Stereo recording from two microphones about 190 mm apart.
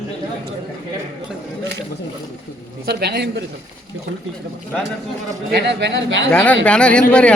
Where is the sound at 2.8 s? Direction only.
60° right (ahead or behind).